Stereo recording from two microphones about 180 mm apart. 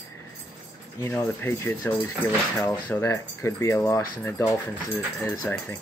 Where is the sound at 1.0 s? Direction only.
15° left (ahead or behind).